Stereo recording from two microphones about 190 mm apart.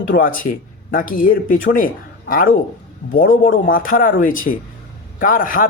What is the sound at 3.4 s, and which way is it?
Speech, 50° left (ahead or behind).